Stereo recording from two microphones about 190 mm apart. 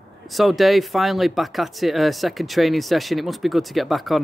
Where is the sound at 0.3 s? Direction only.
Centre (ahead or behind).